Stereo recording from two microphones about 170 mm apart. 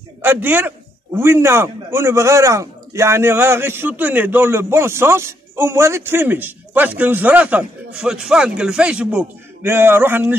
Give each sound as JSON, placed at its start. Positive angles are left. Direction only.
{"t": 0.2, "sound": "a man's voice", "side_deg": -10}